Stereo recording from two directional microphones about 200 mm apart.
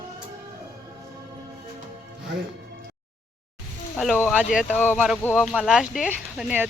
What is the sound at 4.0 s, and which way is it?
Speech, 5° left (ahead or behind).